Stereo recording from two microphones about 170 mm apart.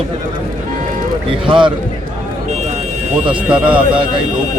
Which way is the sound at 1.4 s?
30° right (ahead or behind).